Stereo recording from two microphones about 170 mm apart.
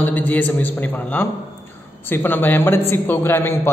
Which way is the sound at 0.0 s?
10° left (ahead or behind).